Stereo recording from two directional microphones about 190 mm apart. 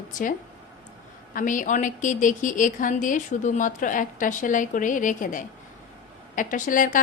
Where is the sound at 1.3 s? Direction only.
45° left (ahead or behind).